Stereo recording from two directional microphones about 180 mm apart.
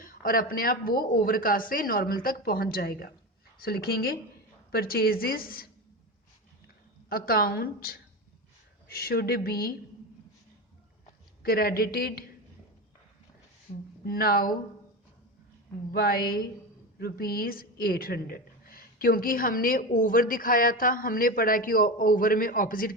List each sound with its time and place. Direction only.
0.0 s a woman's voice: 50° left (ahead or behind)
7.1 s a woman's voice: 55° left (ahead or behind)
11.4 s a woman's voice: 55° left (ahead or behind)
13.7 s a woman's voice: 45° left (ahead or behind)
14.0 s a woman's voice: 55° left (ahead or behind)
15.9 s a woman's voice: 55° left (ahead or behind)